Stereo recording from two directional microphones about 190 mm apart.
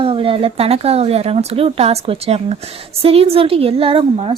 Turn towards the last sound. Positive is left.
turn(degrees=-30)  # may be behind; listen again after turning